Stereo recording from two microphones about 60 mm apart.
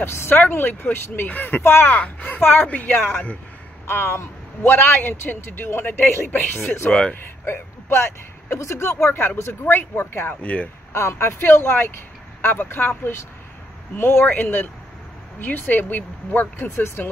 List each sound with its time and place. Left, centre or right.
0.0 s speech: left
1.6 s speech: left
1.9 s a woman's voice: left
3.8 s a man's voice: left
6.6 s speech: left
6.9 s speech: centre
7.4 s speech: left